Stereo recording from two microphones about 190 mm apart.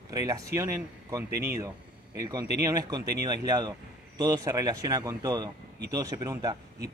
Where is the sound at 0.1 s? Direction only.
15° right (ahead or behind).